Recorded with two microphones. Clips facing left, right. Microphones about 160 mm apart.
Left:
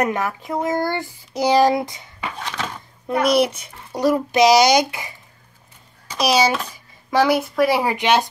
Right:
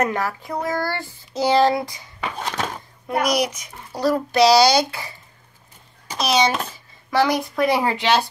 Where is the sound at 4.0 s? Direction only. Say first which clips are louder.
Left 1 dB; 15° left (ahead or behind).